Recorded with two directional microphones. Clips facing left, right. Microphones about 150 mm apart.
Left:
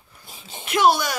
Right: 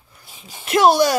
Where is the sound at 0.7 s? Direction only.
40° right (ahead or behind).